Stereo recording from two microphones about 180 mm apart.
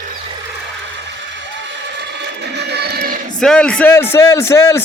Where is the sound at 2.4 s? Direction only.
70° right (ahead or behind).